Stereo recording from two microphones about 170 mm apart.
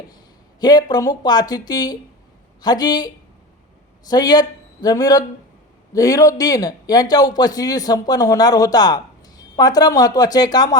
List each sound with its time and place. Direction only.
0.6 s a man's voice: 25° left (ahead or behind)
4.1 s a man's voice: 25° left (ahead or behind)